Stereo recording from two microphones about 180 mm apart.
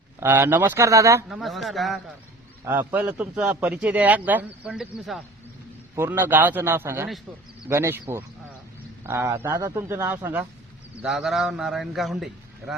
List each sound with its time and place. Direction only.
0.2 s speech: 15° right (ahead or behind)
1.3 s a man's voice: centre (ahead or behind)
2.6 s speech: 10° right (ahead or behind)
6.0 s speech: 10° right (ahead or behind)
9.0 s speech: 15° right (ahead or behind)
11.0 s a man's voice: centre (ahead or behind)